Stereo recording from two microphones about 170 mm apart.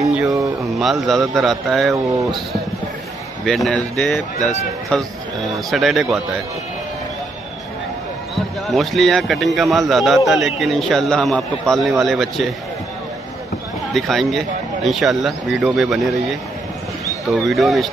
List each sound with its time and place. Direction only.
0.3 s a sound: 20° right (ahead or behind)
0.7 s a man's voice: centre (ahead or behind)
3.4 s a man's voice: centre (ahead or behind)
8.4 s a man's voice: centre (ahead or behind)
13.9 s a man's voice: centre (ahead or behind)
17.5 s a man's voice: centre (ahead or behind)